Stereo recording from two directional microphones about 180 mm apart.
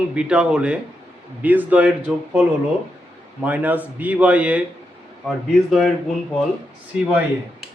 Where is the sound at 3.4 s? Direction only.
10° right (ahead or behind).